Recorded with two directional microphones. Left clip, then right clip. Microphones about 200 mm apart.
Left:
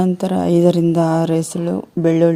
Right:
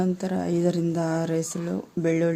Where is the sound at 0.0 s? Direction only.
35° left (ahead or behind).